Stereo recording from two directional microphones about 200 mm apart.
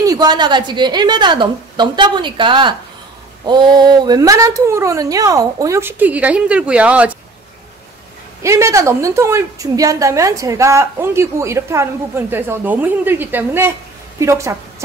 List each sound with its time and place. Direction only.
0.0 s a woman's voice: 20° right (ahead or behind)
8.4 s a woman's voice: 15° right (ahead or behind)